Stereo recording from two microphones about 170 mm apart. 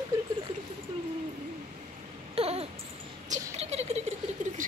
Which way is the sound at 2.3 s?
35° right (ahead or behind).